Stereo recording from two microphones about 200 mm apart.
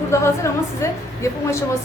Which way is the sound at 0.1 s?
15° left (ahead or behind).